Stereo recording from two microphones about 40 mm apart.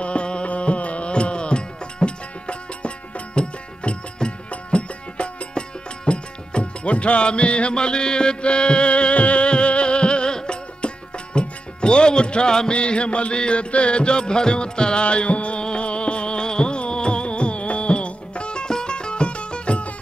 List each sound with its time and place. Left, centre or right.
0.0 s music: left